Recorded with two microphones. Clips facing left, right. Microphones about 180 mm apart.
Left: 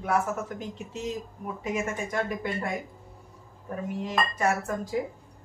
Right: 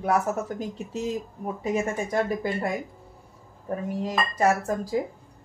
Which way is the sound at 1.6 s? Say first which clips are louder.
Right 4 dB; 35° right (ahead or behind).